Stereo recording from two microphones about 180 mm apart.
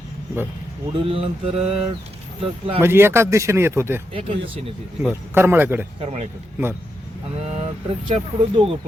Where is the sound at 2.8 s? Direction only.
15° right (ahead or behind).